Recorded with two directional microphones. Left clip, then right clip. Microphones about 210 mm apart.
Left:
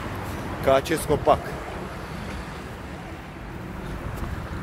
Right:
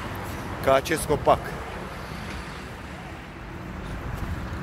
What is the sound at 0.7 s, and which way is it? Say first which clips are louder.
Speech: left 1 dB; 5° right (ahead or behind).